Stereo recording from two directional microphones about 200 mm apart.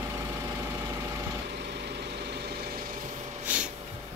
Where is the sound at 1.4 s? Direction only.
55° right (ahead or behind).